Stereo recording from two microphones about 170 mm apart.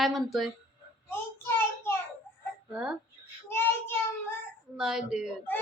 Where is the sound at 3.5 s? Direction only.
15° left (ahead or behind).